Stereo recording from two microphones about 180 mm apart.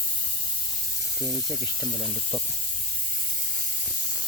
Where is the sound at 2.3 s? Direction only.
20° right (ahead or behind).